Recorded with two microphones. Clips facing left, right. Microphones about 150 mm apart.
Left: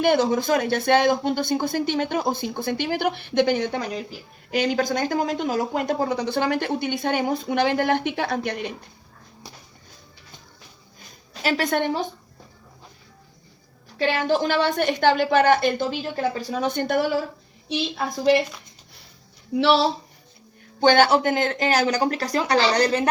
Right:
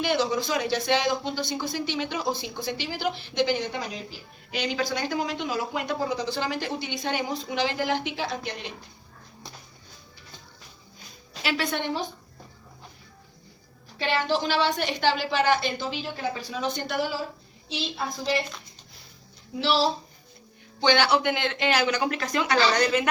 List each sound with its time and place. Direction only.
0.0 s a woman's voice: 55° left (ahead or behind)
11.4 s speech: 45° left (ahead or behind)
14.0 s speech: 50° left (ahead or behind)
19.5 s a woman's voice: 65° left (ahead or behind)
20.8 s speech: 45° left (ahead or behind)